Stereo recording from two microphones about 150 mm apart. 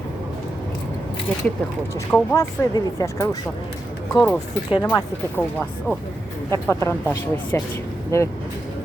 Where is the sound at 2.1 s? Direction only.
20° left (ahead or behind).